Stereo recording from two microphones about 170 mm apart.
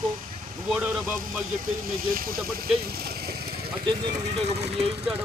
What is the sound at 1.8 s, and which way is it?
Speech, 55° right (ahead or behind).